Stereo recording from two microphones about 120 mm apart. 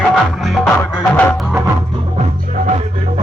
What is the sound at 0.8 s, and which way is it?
Music, 20° left (ahead or behind).